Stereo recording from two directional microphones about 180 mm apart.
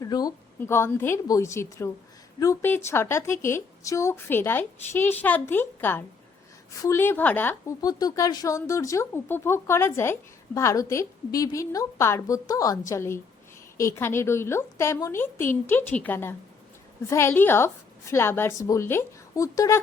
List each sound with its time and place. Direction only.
0.0 s speech: 20° left (ahead or behind)